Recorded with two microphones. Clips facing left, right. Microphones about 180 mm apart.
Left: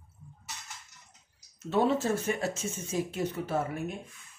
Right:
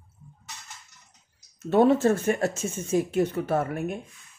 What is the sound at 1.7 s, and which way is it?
Speech, 60° right (ahead or behind).